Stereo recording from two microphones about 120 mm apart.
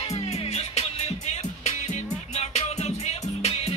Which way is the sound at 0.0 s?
60° left (ahead or behind).